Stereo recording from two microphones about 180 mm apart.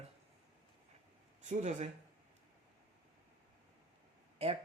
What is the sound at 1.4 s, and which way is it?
Speech, 40° right (ahead or behind).